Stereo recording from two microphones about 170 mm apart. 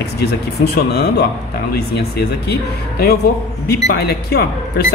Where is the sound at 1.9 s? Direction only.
70° left (ahead or behind).